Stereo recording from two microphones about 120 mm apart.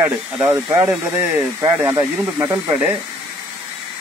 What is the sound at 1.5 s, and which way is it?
Speech, 30° right (ahead or behind).